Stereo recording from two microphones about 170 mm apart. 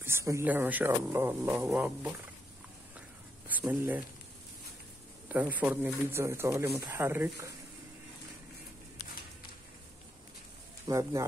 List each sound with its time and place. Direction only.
0.0 s speech: 15° right (ahead or behind)
3.4 s speech: 10° right (ahead or behind)
5.3 s speech: 10° right (ahead or behind)
10.9 s speech: 15° right (ahead or behind)